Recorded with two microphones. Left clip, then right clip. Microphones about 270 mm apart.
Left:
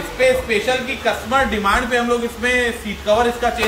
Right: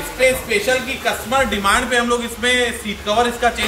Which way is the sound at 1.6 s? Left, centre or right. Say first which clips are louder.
Right 1 dB; centre.